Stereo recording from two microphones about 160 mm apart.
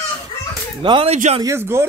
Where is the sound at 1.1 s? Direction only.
45° right (ahead or behind).